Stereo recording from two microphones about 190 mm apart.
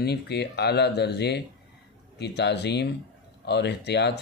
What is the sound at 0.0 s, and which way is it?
A man's voice, 60° left (ahead or behind).